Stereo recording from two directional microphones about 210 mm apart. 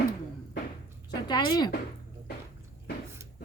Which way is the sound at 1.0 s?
20° left (ahead or behind).